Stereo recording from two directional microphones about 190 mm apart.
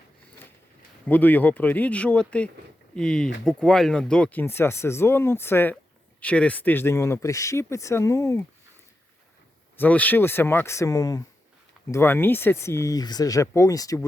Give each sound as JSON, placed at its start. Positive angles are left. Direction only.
{"t": 1.0, "sound": "speech", "side_deg": 10}
{"t": 9.7, "sound": "speech", "side_deg": 10}